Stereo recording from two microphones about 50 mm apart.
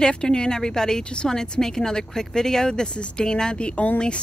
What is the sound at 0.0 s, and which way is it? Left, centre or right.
A woman's voice, centre.